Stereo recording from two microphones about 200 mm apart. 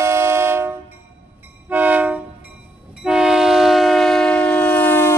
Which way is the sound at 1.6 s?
10° right (ahead or behind).